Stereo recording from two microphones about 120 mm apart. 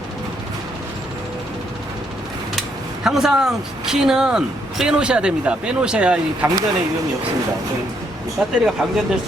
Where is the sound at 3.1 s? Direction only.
5° right (ahead or behind).